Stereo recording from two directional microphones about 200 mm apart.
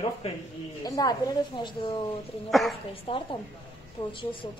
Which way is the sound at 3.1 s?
25° left (ahead or behind).